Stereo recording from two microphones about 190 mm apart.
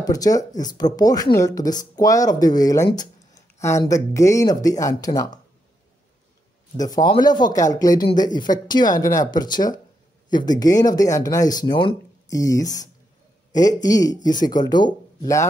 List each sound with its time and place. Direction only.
0.0 s speech: 20° left (ahead or behind)
6.8 s a man's voice: 20° left (ahead or behind)